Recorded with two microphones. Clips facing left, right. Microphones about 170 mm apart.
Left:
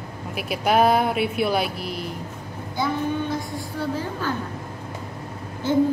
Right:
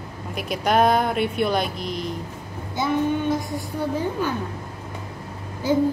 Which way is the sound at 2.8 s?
20° right (ahead or behind).